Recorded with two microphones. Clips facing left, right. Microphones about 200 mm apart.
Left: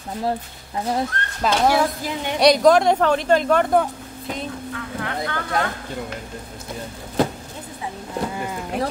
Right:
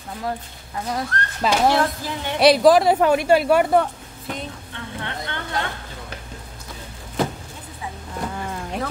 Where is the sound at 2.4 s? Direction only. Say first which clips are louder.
Right 1 dB; 5° right (ahead or behind).